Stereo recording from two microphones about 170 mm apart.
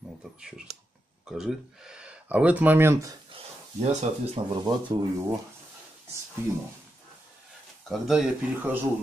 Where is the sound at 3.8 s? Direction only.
40° right (ahead or behind).